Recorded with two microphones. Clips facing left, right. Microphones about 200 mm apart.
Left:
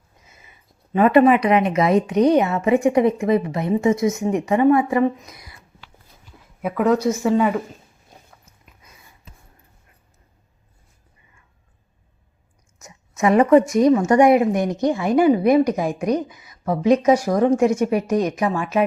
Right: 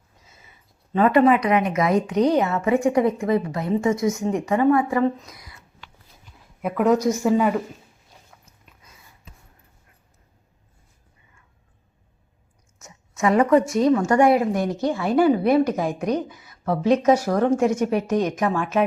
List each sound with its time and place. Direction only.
0.9 s a woman's voice: 15° left (ahead or behind)
6.6 s speech: centre (ahead or behind)
12.8 s a woman's voice: 20° left (ahead or behind)